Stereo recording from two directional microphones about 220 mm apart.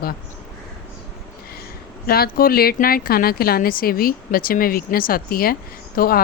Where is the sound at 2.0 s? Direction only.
45° left (ahead or behind).